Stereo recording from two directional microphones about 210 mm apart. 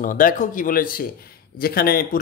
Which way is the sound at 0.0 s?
40° left (ahead or behind).